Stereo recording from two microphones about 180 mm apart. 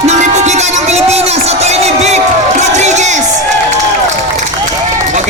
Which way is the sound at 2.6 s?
40° right (ahead or behind).